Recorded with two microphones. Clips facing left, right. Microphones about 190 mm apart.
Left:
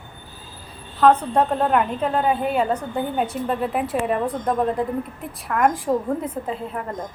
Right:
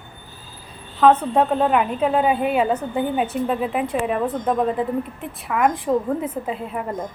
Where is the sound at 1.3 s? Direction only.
5° right (ahead or behind).